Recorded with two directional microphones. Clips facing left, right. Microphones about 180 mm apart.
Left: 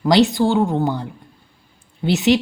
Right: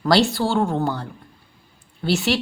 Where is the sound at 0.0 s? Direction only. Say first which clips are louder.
Left 4 dB; 15° left (ahead or behind).